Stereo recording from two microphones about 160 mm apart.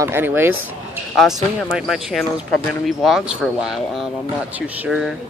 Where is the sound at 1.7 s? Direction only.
Centre (ahead or behind).